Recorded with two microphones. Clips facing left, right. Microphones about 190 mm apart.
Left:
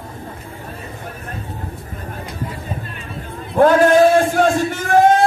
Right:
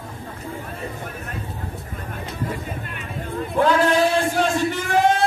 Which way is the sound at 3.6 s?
50° left (ahead or behind).